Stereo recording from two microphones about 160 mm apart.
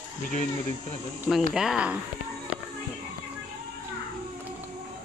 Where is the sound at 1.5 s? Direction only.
5° right (ahead or behind).